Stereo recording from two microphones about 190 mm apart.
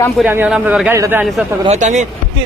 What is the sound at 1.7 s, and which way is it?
Speech, 40° right (ahead or behind).